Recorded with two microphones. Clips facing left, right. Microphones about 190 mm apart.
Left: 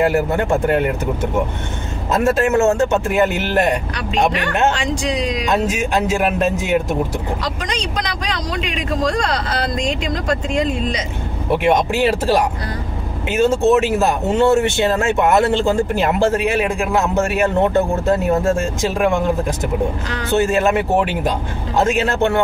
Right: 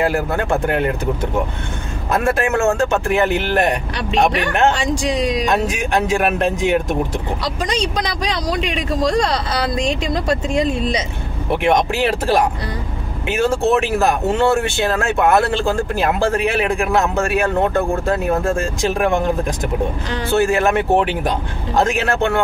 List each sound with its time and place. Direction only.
0.0 s speech: 20° left (ahead or behind)
2.2 s speech: 20° left (ahead or behind)
11.6 s speech: 15° left (ahead or behind)
20.2 s speech: 20° left (ahead or behind)
20.9 s speech: 15° right (ahead or behind)
21.7 s speech: 20° left (ahead or behind)